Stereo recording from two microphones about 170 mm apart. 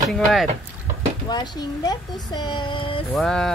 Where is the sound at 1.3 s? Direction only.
25° left (ahead or behind).